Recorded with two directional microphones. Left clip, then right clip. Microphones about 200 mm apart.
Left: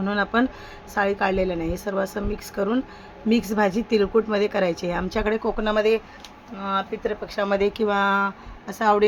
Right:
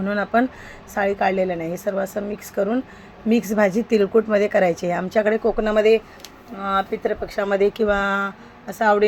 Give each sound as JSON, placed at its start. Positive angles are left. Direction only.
{"t": 0.0, "sound": "a woman's voice", "side_deg": -10}